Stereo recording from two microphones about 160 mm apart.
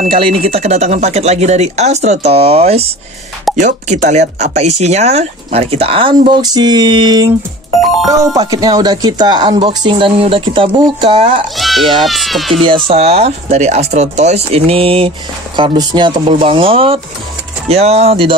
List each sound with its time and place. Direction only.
0.1 s speech: 35° right (ahead or behind)
11.5 s speech: centre (ahead or behind)
12.6 s speech: 35° right (ahead or behind)